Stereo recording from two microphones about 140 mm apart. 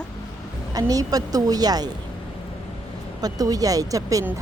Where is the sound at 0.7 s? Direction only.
25° right (ahead or behind).